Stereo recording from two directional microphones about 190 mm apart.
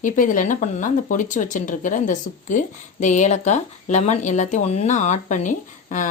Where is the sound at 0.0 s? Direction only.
40° left (ahead or behind).